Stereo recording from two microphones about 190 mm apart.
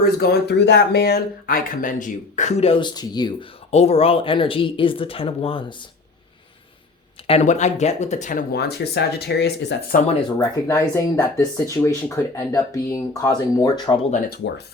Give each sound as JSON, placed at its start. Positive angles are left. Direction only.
{"t": 0.0, "sound": "speech", "side_deg": 55}
{"t": 3.7, "sound": "speech", "side_deg": 35}
{"t": 7.3, "sound": "speech", "side_deg": 35}
{"t": 8.5, "sound": "speech", "side_deg": 60}
{"t": 10.3, "sound": "speech", "side_deg": 15}